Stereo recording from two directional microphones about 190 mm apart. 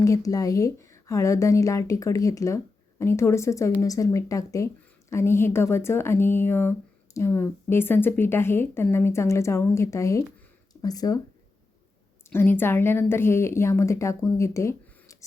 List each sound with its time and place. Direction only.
0.0 s speech: 15° left (ahead or behind)
12.3 s speech: 10° left (ahead or behind)